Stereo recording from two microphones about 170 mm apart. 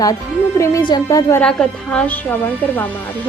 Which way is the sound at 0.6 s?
20° left (ahead or behind).